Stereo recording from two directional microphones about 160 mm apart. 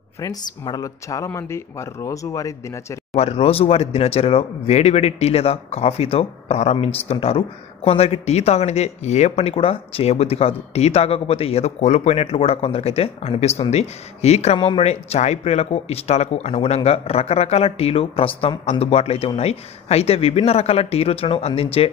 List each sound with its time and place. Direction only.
0.2 s speech: 25° left (ahead or behind)
3.2 s speech: 40° left (ahead or behind)